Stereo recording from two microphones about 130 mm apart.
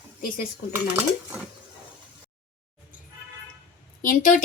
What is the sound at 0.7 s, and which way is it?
Dishes, 15° right (ahead or behind).